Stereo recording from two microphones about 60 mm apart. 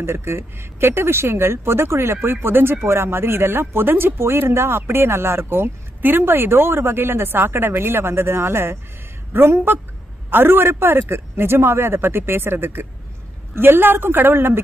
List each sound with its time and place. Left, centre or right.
0.0 s speech: right